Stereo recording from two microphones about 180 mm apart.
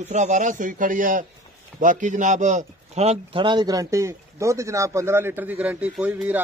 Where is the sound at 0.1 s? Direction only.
40° right (ahead or behind).